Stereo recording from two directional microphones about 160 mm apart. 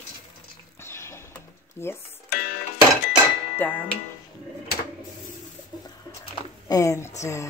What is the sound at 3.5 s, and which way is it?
Music, 10° left (ahead or behind).